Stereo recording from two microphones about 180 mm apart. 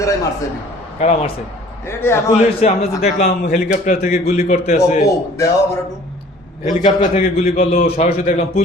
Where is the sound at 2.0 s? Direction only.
15° left (ahead or behind).